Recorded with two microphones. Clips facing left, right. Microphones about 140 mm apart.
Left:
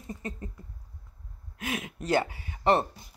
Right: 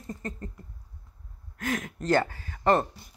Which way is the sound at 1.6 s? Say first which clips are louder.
Right 3 dB; 15° left (ahead or behind).